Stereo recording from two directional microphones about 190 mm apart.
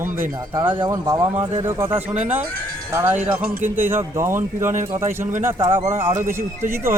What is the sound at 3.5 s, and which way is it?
Speech, 45° right (ahead or behind).